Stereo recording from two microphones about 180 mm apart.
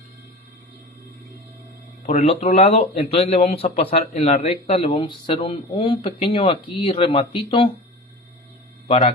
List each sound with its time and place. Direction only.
2.0 s speech: 35° left (ahead or behind)
8.9 s speech: 40° left (ahead or behind)